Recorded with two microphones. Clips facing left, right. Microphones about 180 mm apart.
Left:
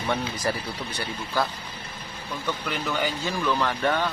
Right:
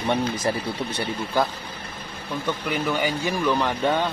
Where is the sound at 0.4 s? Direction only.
25° right (ahead or behind).